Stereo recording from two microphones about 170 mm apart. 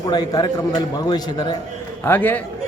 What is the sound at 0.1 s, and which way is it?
A man's voice, 25° left (ahead or behind).